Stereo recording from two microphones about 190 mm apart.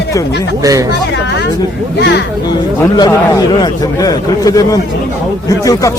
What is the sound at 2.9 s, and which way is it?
A man's voice, 20° left (ahead or behind).